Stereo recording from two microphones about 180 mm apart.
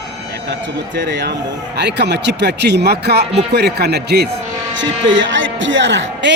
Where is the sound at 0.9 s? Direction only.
80° right.